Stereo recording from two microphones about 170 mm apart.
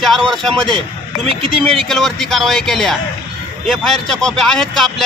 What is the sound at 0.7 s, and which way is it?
Speech, 30° right (ahead or behind).